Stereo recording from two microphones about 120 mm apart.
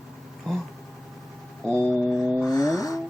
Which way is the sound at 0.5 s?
5° left (ahead or behind).